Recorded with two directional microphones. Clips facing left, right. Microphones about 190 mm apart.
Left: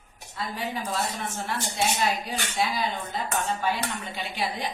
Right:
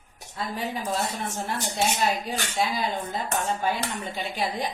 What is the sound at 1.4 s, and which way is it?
A woman's voice, 45° right (ahead or behind).